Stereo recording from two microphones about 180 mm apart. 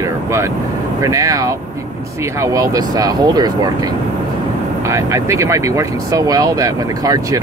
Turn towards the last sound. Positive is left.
turn(degrees=-20)  # may be behind; listen again after turning